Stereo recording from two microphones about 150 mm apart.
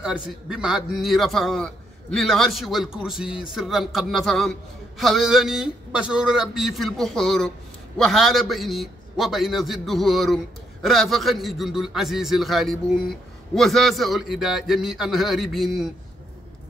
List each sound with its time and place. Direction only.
0.0 s a man's voice: 5° right (ahead or behind)